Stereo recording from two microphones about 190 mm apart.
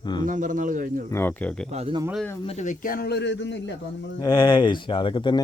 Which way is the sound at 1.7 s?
35° right (ahead or behind).